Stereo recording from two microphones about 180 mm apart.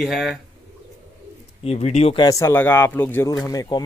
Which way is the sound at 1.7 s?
35° left (ahead or behind).